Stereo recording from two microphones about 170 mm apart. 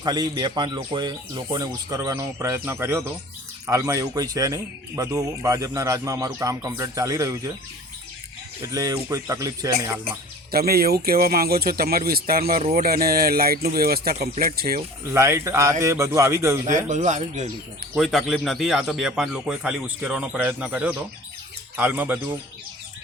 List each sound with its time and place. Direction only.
0.0 s speech: 25° right (ahead or behind)
8.6 s speech: 20° right (ahead or behind)
10.5 s speech: 65° right (ahead or behind)
15.1 s speech: 15° right (ahead or behind)
16.9 s speech: 45° right (ahead or behind)
17.9 s speech: centre (ahead or behind)